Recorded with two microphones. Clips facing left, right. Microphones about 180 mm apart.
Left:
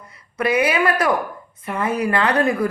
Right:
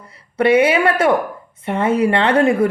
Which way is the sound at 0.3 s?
30° right (ahead or behind).